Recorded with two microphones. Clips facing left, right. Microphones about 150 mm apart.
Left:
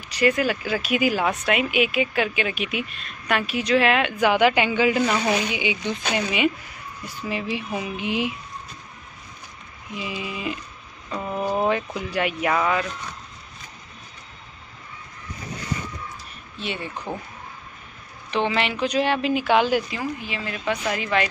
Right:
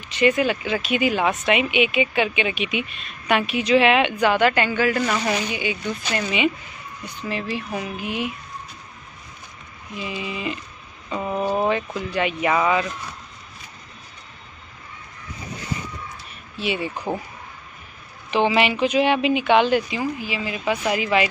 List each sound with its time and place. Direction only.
0.2 s speech: centre (ahead or behind)
4.3 s speech: 10° left (ahead or behind)
8.0 s speech: 90° left
9.9 s speech: 5° left (ahead or behind)
11.1 s speech: 10° right (ahead or behind)
11.6 s speech: 5° left (ahead or behind)
16.5 s speech: 5° right (ahead or behind)
18.3 s speech: 10° right (ahead or behind)